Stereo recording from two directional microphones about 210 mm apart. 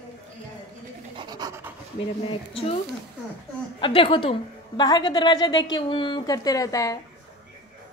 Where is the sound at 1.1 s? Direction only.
20° right (ahead or behind).